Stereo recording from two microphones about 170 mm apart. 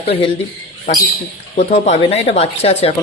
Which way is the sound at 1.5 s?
45° left (ahead or behind).